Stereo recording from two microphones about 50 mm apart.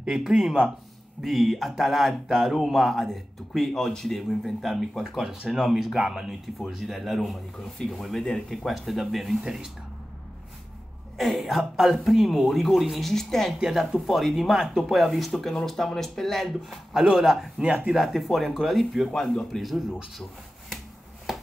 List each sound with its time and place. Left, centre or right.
0.0 s speech: centre
9.4 s speech: centre
11.1 s speech: centre
13.6 s speech: centre
17.6 s speech: right
17.9 s speech: centre
21.3 s a sound: centre